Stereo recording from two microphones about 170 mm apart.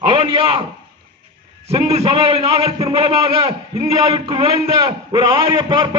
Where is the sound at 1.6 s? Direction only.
35° right (ahead or behind).